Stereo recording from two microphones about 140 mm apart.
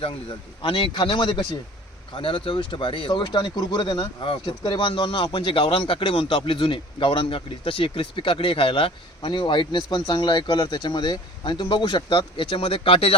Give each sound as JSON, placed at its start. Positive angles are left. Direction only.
{"t": 0.0, "sound": "speech", "side_deg": 35}